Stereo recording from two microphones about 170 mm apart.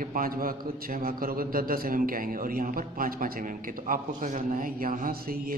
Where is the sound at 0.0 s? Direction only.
55° right (ahead or behind).